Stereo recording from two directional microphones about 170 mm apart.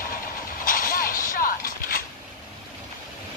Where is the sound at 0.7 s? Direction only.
55° left (ahead or behind).